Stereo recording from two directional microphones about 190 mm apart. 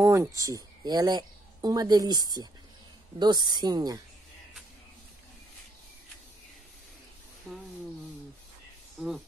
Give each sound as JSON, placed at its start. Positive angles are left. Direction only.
{"t": 0.0, "sound": "a sound", "side_deg": -15}
{"t": 0.4, "sound": "a woman's voice", "side_deg": -15}
{"t": 9.0, "sound": "speech", "side_deg": 0}